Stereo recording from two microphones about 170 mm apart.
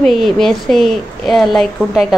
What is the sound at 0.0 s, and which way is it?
A woman's voice, centre (ahead or behind).